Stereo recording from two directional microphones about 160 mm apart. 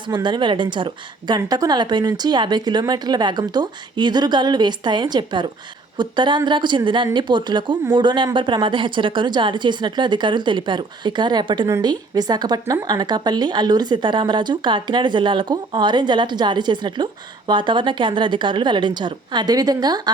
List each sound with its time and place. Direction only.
0.1 s speech: 30° right (ahead or behind)